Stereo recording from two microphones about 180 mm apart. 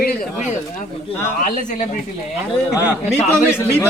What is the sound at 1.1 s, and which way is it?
Speech, 15° left (ahead or behind).